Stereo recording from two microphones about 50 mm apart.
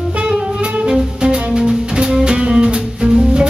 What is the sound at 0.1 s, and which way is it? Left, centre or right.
Music, centre.